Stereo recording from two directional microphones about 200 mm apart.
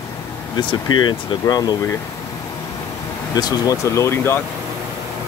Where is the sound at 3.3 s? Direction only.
20° left (ahead or behind).